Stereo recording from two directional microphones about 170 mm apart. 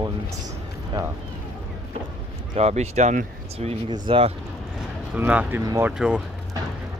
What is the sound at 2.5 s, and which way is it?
Speech, 40° right (ahead or behind).